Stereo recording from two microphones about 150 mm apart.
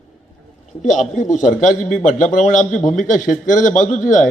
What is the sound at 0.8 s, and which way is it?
A man's voice, 55° left (ahead or behind).